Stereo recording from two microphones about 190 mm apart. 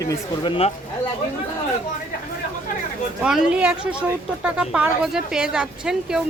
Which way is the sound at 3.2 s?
5° right (ahead or behind).